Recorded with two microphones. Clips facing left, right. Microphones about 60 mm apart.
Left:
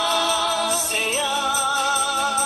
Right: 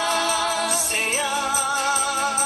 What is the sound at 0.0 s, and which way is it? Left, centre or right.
Music, right.